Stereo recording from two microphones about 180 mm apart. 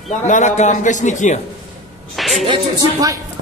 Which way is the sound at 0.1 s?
45° left (ahead or behind).